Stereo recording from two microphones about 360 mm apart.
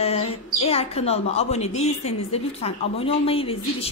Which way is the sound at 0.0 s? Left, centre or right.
Centre.